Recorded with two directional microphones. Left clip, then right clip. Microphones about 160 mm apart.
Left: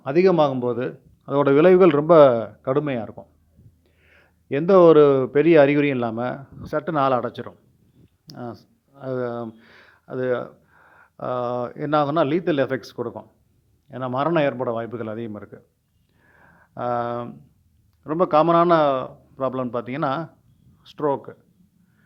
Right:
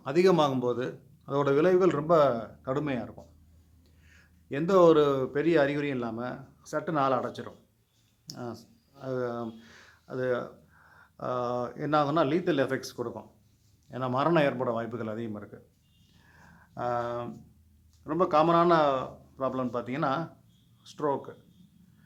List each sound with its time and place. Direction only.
0.0 s a man's voice: 30° left (ahead or behind)
16.3 s a sound: 30° left (ahead or behind)
18.0 s a man's voice: 45° left (ahead or behind)